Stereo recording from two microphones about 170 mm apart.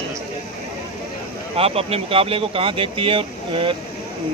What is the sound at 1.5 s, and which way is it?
Speech, 35° right (ahead or behind).